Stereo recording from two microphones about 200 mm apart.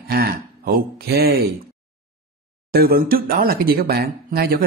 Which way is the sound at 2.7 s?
50° right (ahead or behind).